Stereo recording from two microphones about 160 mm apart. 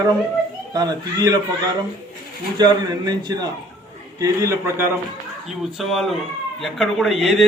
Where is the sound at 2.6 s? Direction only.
25° right (ahead or behind).